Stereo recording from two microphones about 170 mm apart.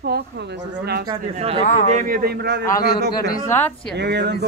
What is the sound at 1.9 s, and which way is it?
A man's voice, 55° right (ahead or behind).